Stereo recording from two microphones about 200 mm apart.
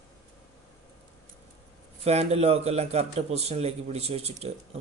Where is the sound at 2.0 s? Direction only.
30° right (ahead or behind).